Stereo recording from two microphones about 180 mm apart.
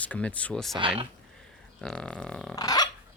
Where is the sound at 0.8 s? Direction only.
30° right (ahead or behind).